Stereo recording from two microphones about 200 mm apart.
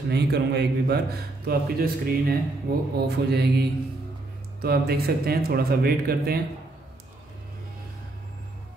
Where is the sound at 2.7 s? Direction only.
50° right (ahead or behind).